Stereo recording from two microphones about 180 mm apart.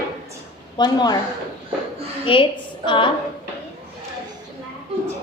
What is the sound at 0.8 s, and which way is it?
Speech, 25° left (ahead or behind).